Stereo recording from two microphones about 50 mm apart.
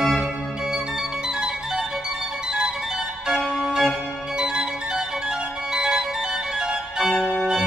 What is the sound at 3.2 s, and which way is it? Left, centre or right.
Music, centre.